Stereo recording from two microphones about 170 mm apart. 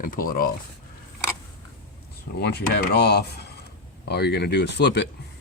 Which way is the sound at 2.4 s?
75° left (ahead or behind).